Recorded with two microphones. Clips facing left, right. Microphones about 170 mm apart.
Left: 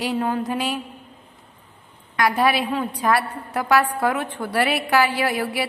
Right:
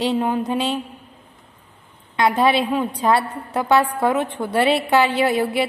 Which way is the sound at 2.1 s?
25° right (ahead or behind).